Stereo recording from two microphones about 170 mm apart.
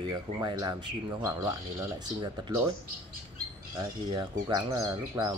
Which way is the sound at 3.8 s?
25° right (ahead or behind).